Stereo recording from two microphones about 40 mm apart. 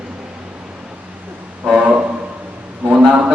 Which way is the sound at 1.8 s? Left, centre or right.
Right.